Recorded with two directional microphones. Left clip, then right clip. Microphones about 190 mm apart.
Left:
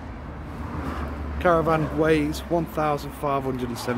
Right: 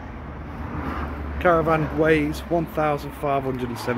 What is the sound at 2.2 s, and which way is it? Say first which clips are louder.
Speech: right 1 dB; 15° left (ahead or behind).